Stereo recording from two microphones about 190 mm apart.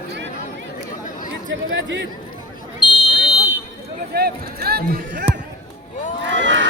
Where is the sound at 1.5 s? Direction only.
75° right (ahead or behind).